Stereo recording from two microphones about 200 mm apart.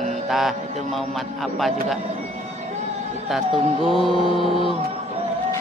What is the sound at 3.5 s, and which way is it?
Mantra, 25° right (ahead or behind).